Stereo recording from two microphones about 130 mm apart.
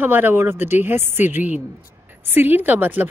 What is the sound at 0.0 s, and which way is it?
A woman's voice, 15° right (ahead or behind).